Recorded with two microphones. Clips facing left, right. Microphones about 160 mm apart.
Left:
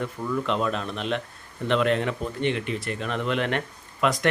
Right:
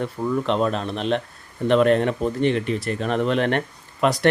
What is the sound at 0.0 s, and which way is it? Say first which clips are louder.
Speech: right 4 dB; 35° right (ahead or behind).